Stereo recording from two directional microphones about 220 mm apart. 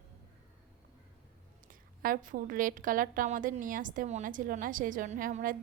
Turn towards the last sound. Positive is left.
turn(degrees=-40)  # may be behind; listen again after turning